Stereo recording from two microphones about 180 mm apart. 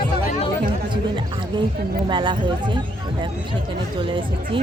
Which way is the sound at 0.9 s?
25° right (ahead or behind).